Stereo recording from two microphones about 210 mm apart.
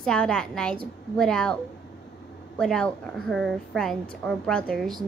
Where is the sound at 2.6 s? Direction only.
5° left (ahead or behind).